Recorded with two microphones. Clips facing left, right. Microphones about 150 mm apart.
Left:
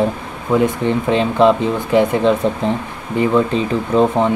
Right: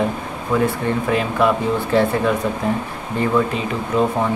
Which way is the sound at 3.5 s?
30° left (ahead or behind).